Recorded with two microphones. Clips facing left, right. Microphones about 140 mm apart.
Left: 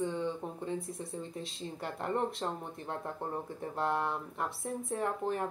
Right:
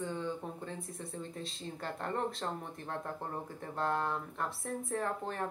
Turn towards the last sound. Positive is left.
turn(degrees=20)  # may be behind; listen again after turning